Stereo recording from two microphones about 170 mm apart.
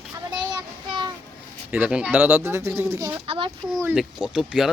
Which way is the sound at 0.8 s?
25° right (ahead or behind).